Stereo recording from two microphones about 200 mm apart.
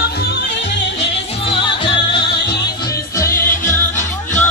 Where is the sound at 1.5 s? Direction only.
25° left (ahead or behind).